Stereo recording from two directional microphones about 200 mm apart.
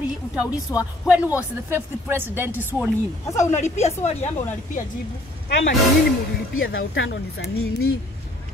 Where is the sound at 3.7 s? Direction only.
35° left (ahead or behind).